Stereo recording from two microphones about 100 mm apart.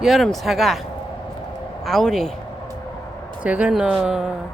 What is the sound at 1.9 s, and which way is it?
Speech, 5° left (ahead or behind).